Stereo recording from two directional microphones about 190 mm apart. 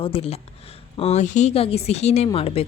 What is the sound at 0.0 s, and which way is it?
A woman's voice, 30° left (ahead or behind).